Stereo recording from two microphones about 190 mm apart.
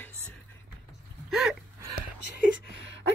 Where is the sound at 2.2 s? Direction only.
60° left (ahead or behind).